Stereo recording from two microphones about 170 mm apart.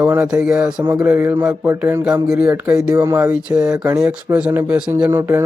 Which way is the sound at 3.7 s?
15° right (ahead or behind).